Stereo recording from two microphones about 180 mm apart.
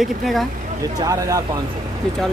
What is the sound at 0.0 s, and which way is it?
Speech, centre (ahead or behind).